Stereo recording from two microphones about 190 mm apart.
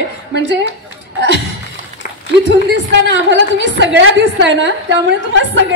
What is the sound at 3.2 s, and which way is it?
A woman's voice, 70° right (ahead or behind).